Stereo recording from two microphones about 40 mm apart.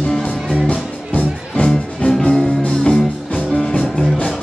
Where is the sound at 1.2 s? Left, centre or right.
Left.